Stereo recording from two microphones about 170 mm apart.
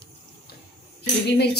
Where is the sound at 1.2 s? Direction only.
70° left (ahead or behind).